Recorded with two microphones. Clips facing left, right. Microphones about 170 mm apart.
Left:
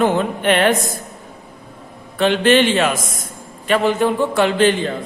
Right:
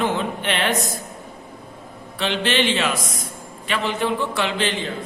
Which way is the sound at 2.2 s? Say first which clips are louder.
Left 8 dB; 50° left (ahead or behind).